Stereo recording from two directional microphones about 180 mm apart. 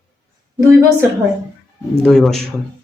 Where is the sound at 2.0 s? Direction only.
5° left (ahead or behind).